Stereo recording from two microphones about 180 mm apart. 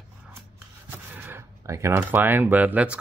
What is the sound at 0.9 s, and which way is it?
Speech, 10° right (ahead or behind).